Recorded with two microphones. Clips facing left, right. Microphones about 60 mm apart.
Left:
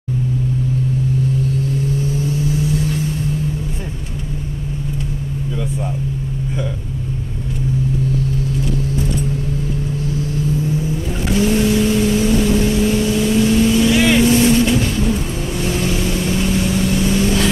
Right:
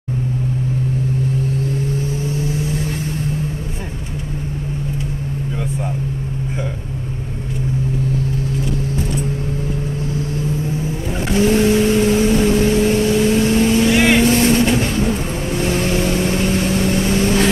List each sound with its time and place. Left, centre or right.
11.3 s vehicle: right